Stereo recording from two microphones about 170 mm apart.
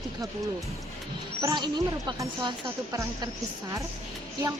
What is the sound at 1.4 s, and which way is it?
A woman's voice, 25° right (ahead or behind).